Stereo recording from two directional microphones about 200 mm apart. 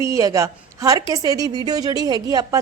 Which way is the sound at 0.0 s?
15° right (ahead or behind).